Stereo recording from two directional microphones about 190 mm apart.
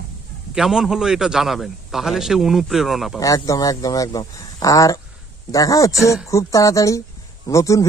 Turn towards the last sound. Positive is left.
turn(degrees=15)  # may be behind; listen again after turning